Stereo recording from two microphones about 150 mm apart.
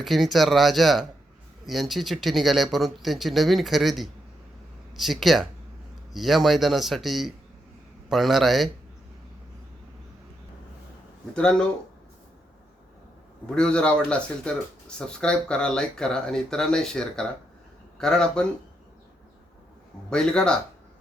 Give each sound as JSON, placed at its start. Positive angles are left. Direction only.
{"t": 0.0, "sound": "speech", "side_deg": 0}
{"t": 11.3, "sound": "speech", "side_deg": 5}
{"t": 13.5, "sound": "speech", "side_deg": 5}
{"t": 20.1, "sound": "speech", "side_deg": 5}